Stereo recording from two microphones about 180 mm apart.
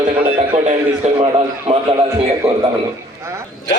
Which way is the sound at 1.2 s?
25° right (ahead or behind).